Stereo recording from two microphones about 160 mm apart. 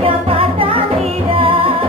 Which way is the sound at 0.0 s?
35° right (ahead or behind).